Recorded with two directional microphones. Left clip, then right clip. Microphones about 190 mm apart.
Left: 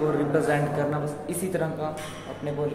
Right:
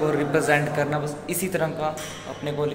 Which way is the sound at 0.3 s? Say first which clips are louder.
Right 3 dB; 10° right (ahead or behind).